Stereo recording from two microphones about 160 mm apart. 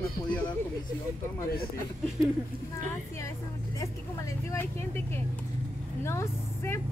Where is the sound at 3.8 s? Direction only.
20° left (ahead or behind).